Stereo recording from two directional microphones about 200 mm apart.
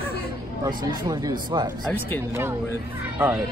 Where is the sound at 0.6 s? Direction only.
20° right (ahead or behind).